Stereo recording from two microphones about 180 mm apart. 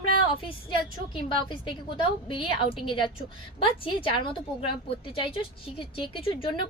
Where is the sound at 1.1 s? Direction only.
25° left (ahead or behind).